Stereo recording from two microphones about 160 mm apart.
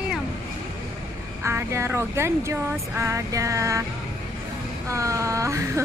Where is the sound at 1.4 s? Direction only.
15° right (ahead or behind).